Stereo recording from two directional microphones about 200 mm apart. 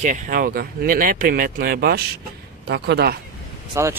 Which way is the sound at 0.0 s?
40° right (ahead or behind).